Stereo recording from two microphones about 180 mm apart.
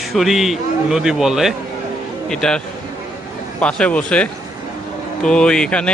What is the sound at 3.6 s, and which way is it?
A man's voice, 5° left (ahead or behind).